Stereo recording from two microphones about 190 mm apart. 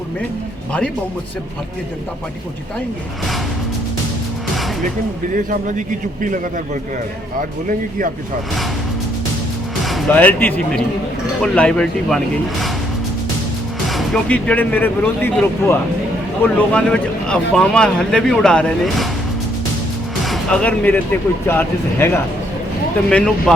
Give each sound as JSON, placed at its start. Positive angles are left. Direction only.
{"t": 5.3, "sound": "speech", "side_deg": -45}
{"t": 7.7, "sound": "speech", "side_deg": -45}
{"t": 9.8, "sound": "speech", "side_deg": 5}
{"t": 13.8, "sound": "speech", "side_deg": 0}
{"t": 20.2, "sound": "speech", "side_deg": 0}